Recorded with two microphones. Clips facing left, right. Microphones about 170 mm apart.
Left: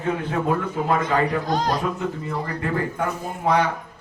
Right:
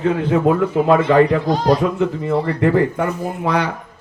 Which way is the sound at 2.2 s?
75° right (ahead or behind).